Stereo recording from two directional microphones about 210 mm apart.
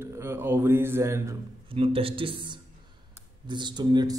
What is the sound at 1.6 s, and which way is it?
A man's voice, 25° right (ahead or behind).